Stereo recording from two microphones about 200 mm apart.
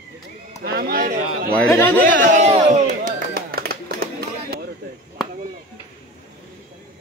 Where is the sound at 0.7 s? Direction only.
50° right (ahead or behind).